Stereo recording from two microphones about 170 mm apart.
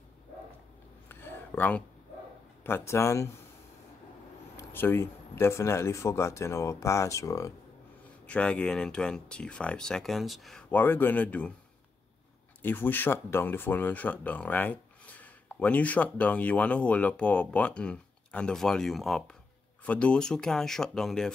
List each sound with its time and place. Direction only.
1.0 s a sound: 10° left (ahead or behind)
2.6 s speech: 15° left (ahead or behind)
4.6 s speech: 15° left (ahead or behind)
8.3 s speech: 5° left (ahead or behind)
12.6 s speech: 10° left (ahead or behind)